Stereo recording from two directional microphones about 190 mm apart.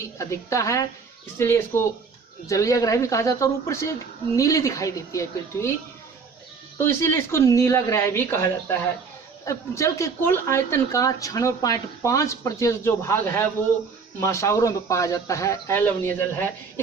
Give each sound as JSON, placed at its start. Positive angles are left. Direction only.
{"t": 0.0, "sound": "speech", "side_deg": 15}
{"t": 6.8, "sound": "speech", "side_deg": 15}